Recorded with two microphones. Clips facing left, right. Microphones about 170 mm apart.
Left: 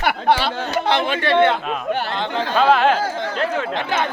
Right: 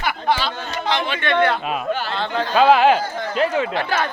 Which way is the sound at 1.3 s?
25° left (ahead or behind).